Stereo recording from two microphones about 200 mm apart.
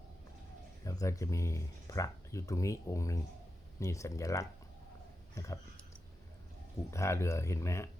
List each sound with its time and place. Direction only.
0.9 s speech: 15° left (ahead or behind)
6.9 s speech: 15° left (ahead or behind)